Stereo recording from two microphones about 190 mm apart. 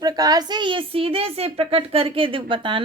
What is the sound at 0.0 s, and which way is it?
A woman's voice, 20° right (ahead or behind).